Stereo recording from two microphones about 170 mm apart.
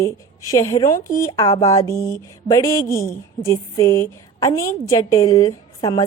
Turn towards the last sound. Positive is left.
turn(degrees=20)  # may be behind; listen again after turning